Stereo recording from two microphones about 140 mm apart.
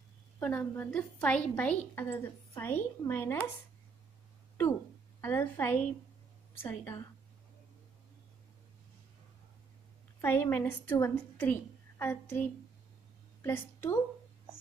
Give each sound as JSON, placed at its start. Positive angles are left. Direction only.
{"t": 0.4, "sound": "a woman's voice", "side_deg": 15}
{"t": 5.2, "sound": "a woman's voice", "side_deg": 15}
{"t": 10.2, "sound": "a woman's voice", "side_deg": 15}